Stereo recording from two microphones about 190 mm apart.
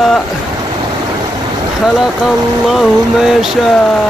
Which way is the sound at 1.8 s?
Centre (ahead or behind).